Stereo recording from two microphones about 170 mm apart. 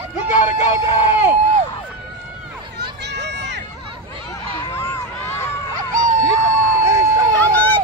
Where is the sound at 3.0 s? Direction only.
85° right.